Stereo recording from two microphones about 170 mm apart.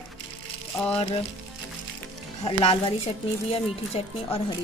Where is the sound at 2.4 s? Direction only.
30° left (ahead or behind).